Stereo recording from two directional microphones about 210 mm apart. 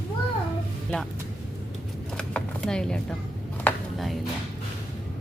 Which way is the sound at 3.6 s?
Centre (ahead or behind).